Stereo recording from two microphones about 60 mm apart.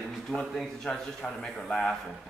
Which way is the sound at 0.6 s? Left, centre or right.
Centre.